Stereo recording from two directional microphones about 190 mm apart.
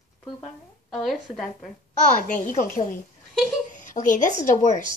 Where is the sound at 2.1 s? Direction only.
45° left (ahead or behind).